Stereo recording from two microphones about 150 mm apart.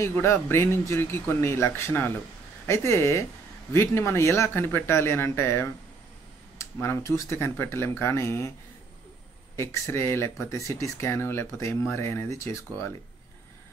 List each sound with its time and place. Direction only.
0.0 s speech: 15° left (ahead or behind)
9.6 s speech: 15° left (ahead or behind)